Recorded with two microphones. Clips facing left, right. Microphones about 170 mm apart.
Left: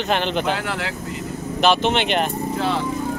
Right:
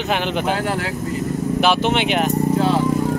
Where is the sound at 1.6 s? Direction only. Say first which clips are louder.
Left 1 dB; 10° right (ahead or behind).